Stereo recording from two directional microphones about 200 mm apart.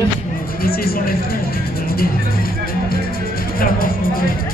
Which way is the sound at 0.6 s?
50° left (ahead or behind).